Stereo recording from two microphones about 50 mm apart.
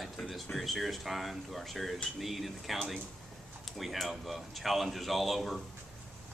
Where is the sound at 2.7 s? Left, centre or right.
Centre.